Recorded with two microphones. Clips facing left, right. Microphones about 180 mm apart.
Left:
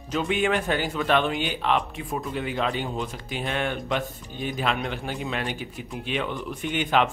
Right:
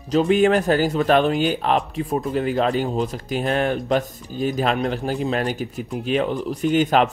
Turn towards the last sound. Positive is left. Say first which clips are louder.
# right 6 dB
turn(degrees=-40)  # may be behind; listen again after turning